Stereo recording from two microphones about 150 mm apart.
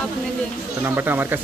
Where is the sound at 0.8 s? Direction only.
15° right (ahead or behind).